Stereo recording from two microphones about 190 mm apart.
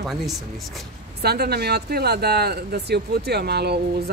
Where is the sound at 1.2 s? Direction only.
55° right (ahead or behind).